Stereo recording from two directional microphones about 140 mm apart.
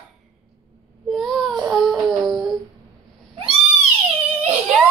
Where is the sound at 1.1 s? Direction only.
Centre (ahead or behind).